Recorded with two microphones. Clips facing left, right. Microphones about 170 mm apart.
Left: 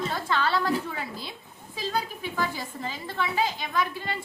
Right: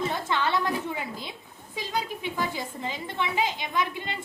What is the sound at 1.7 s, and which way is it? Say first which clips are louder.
A woman's voice: left 1 dB; 20° right (ahead or behind).